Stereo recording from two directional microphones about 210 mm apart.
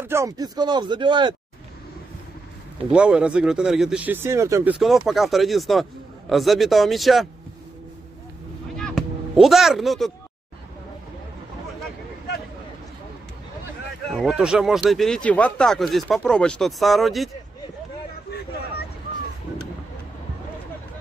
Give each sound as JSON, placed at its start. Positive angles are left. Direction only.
{"t": 0.0, "sound": "speech", "side_deg": -15}
{"t": 2.9, "sound": "speech", "side_deg": -5}
{"t": 4.7, "sound": "speech", "side_deg": 0}
{"t": 8.7, "sound": "a sound", "side_deg": 0}
{"t": 14.1, "sound": "speech", "side_deg": 0}